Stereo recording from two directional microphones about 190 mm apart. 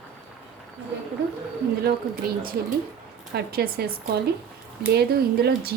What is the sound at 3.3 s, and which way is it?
Speech, 55° right (ahead or behind).